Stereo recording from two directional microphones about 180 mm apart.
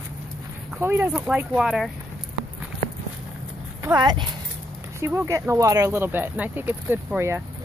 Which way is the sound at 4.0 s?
25° right (ahead or behind).